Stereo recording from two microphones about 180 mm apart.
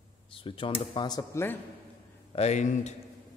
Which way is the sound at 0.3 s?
30° left (ahead or behind).